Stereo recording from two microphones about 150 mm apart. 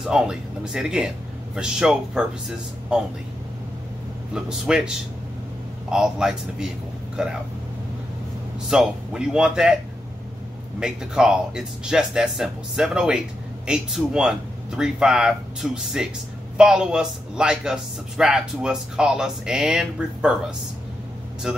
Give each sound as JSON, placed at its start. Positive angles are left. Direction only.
{"t": 0.0, "sound": "a man's voice", "side_deg": -5}
{"t": 4.3, "sound": "a man's voice", "side_deg": -5}
{"t": 8.6, "sound": "a man's voice", "side_deg": -5}
{"t": 10.8, "sound": "a man's voice", "side_deg": -5}
{"t": 21.5, "sound": "speech", "side_deg": -5}